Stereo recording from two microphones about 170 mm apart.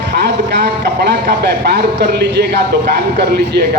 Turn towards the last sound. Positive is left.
turn(degrees=-75)  # may be behind; listen again after turning